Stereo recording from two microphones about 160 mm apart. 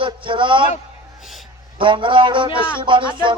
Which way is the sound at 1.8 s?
30° right (ahead or behind).